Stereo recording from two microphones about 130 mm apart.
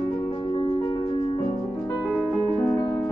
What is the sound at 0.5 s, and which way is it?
Music, 40° left (ahead or behind).